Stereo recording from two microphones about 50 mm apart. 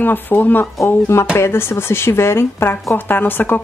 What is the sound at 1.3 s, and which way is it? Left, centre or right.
Speech, left.